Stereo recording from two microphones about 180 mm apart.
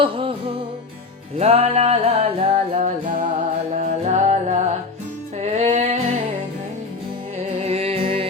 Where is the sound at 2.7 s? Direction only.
45° right (ahead or behind).